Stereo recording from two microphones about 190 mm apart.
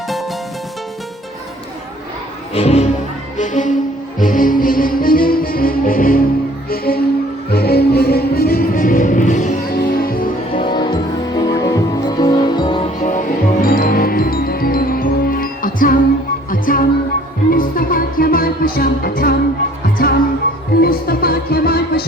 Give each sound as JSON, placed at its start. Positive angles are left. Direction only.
{"t": 2.6, "sound": "speech", "side_deg": 35}
{"t": 3.3, "sound": "music", "side_deg": 40}
{"t": 10.6, "sound": "music", "side_deg": 25}
{"t": 13.0, "sound": "music", "side_deg": 40}